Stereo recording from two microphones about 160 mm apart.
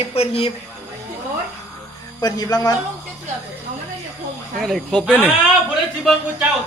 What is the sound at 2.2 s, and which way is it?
Speech, 25° left (ahead or behind).